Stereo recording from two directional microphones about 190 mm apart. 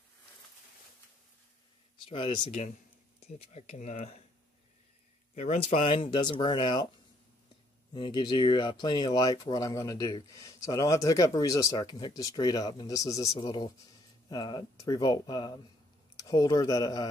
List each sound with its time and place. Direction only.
2.0 s speech: 25° left (ahead or behind)
5.3 s speech: 35° left (ahead or behind)
7.9 s speech: 25° left (ahead or behind)